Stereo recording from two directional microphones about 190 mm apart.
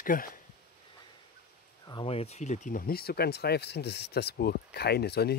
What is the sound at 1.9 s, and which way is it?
Speech, 25° left (ahead or behind).